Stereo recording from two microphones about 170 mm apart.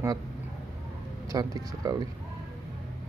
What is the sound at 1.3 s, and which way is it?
Speech, 20° right (ahead or behind).